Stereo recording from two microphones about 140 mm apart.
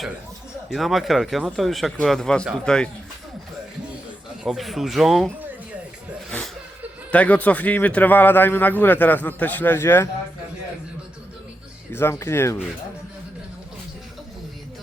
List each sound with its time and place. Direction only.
0.7 s speech: centre (ahead or behind)
4.4 s speech: centre (ahead or behind)
7.1 s speech: 10° left (ahead or behind)
11.9 s speech: 15° left (ahead or behind)